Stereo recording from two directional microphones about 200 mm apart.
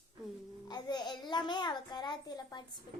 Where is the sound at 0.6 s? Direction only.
20° left (ahead or behind).